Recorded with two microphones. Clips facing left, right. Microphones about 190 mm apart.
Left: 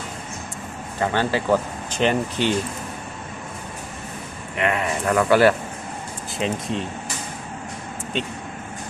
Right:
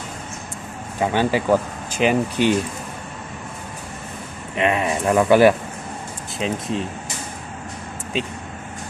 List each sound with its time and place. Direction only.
0.9 s speech: 15° right (ahead or behind)
4.5 s speech: 20° right (ahead or behind)
6.4 s speech: centre (ahead or behind)